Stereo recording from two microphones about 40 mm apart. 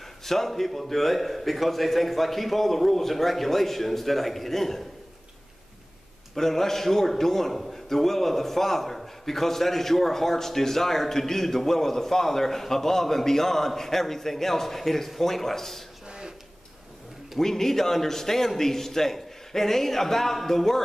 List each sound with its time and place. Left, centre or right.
0.2 s a man's voice: centre
6.3 s a man's voice: centre
16.1 s a sound: centre
17.4 s a man's voice: centre